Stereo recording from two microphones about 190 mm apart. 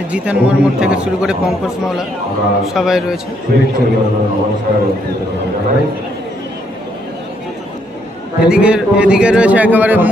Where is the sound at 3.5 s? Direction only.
60° right (ahead or behind).